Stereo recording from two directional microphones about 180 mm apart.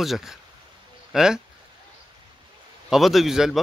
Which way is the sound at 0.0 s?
Centre (ahead or behind).